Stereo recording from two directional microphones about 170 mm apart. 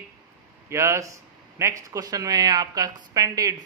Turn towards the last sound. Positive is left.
turn(degrees=-20)  # may be behind; listen again after turning